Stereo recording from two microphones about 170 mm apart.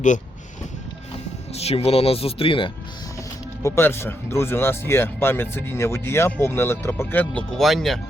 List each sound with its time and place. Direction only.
1.5 s speech: 35° left (ahead or behind)
3.6 s speech: 15° left (ahead or behind)